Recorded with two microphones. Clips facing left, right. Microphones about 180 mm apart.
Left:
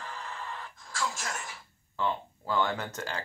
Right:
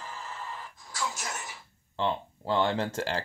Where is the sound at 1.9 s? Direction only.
25° right (ahead or behind).